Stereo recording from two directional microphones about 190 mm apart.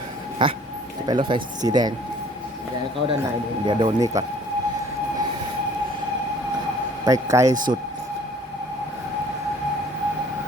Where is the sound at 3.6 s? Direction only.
25° right (ahead or behind).